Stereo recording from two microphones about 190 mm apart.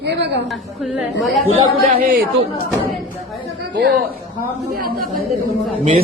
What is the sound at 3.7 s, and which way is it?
Speech, 65° right (ahead or behind).